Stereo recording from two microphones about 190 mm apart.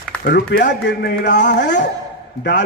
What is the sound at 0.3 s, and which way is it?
A man's voice, 65° left (ahead or behind).